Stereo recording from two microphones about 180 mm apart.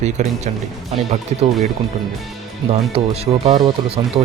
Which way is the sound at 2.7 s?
35° right (ahead or behind).